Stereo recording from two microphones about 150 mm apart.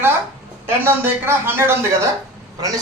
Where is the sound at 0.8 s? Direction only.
15° right (ahead or behind).